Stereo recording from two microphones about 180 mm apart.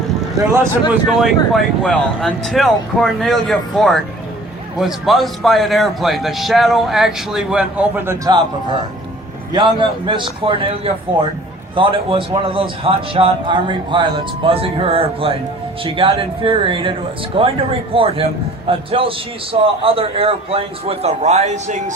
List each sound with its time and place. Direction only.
0.3 s speech: 15° right (ahead or behind)
1.2 s a man's voice: centre (ahead or behind); by 21.9 s 40° right (ahead or behind)